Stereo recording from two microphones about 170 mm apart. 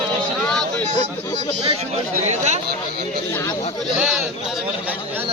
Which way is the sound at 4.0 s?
5° right (ahead or behind).